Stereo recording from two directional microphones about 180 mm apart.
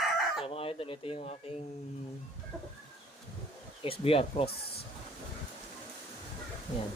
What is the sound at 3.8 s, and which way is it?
Speech, 30° left (ahead or behind).